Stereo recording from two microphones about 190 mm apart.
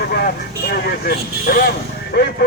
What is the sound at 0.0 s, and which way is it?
Speech, 55° left (ahead or behind).